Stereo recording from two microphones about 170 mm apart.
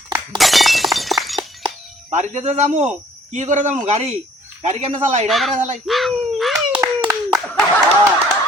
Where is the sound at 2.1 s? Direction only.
45° right (ahead or behind).